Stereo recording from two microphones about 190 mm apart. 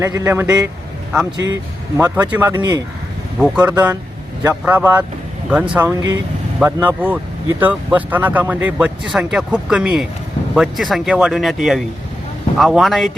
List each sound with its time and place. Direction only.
0.0 s speech: 15° right (ahead or behind)
2.6 s speech: 20° right (ahead or behind)
3.3 s speech: 5° right (ahead or behind)